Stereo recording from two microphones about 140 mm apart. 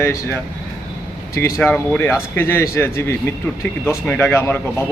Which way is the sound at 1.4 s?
15° left (ahead or behind).